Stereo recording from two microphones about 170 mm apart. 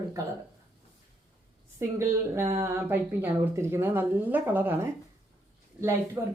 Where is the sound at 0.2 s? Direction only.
20° right (ahead or behind).